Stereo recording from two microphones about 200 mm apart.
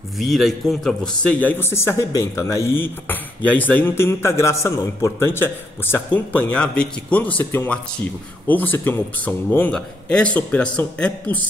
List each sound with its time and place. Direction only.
0.2 s a man's voice: centre (ahead or behind)